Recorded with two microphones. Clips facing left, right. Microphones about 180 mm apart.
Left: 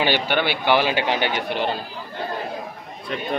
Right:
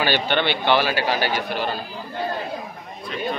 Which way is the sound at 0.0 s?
15° left (ahead or behind).